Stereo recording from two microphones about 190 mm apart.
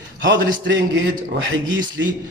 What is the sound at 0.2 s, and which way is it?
A man's voice, 70° right (ahead or behind).